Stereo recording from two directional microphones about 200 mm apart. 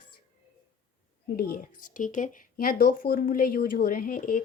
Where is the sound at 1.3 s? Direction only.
45° left (ahead or behind).